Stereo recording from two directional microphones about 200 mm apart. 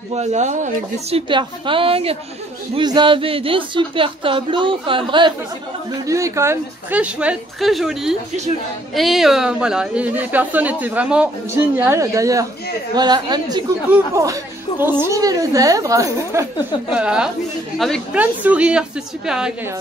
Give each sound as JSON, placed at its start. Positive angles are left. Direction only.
{"t": 0.1, "sound": "a woman's voice", "side_deg": -35}